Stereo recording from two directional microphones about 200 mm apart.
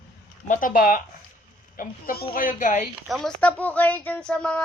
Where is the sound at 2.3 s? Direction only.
40° left (ahead or behind).